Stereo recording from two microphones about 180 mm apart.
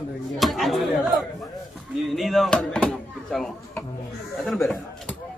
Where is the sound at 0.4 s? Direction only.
Centre (ahead or behind).